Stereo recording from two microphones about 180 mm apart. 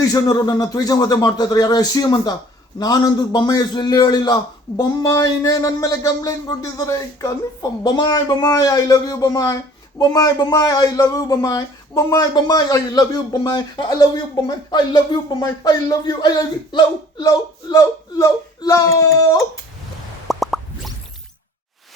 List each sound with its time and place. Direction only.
0.0 s a man's voice: 20° left (ahead or behind)
20.2 s plop: centre (ahead or behind)